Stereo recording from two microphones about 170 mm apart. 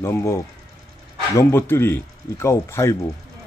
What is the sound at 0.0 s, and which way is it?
Speech, 15° left (ahead or behind).